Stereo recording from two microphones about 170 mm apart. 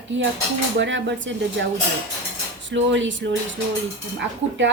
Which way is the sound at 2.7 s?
90° right.